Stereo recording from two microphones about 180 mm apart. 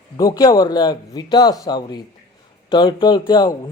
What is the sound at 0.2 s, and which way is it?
Speech, 20° left (ahead or behind).